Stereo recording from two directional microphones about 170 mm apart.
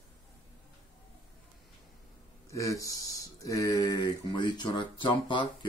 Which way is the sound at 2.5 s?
20° left (ahead or behind).